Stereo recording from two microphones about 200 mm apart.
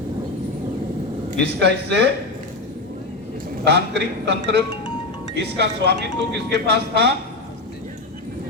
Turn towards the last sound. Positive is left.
turn(degrees=-55)  # may be behind; listen again after turning